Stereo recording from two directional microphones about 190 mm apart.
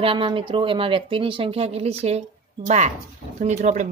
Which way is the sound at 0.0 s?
30° right (ahead or behind).